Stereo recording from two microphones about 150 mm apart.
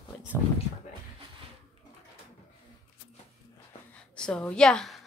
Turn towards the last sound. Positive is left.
turn(degrees=5)  # may be behind; listen again after turning